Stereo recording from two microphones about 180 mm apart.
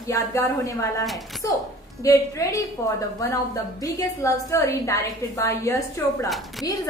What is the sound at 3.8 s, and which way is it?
A woman's voice, 15° left (ahead or behind).